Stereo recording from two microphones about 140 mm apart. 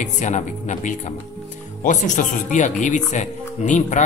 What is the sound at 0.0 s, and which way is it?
Speech, 60° left (ahead or behind).